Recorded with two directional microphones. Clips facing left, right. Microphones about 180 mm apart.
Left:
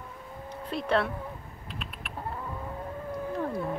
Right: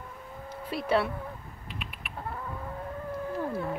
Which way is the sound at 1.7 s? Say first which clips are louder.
Left 1 dB; centre (ahead or behind).